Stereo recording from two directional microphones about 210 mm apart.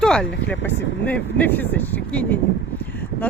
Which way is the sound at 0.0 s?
5° left (ahead or behind).